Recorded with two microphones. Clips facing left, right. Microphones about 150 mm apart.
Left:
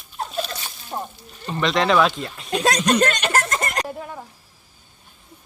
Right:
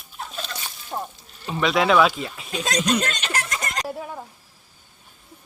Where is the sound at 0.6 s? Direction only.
5° left (ahead or behind).